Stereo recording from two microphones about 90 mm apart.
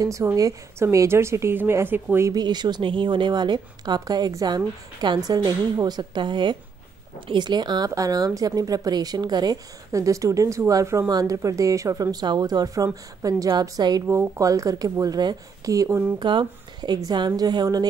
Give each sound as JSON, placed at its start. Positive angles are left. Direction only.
{"t": 0.0, "sound": "a woman's voice", "side_deg": -35}
{"t": 2.3, "sound": "a woman's voice", "side_deg": -55}
{"t": 7.9, "sound": "a woman's voice", "side_deg": -40}
{"t": 9.9, "sound": "speech", "side_deg": -35}
{"t": 14.0, "sound": "speech", "side_deg": -35}
{"t": 16.2, "sound": "a woman's voice", "side_deg": -60}